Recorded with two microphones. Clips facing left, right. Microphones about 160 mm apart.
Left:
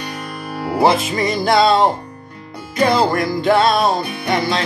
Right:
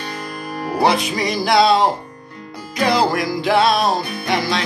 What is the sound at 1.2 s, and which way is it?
Music, centre (ahead or behind).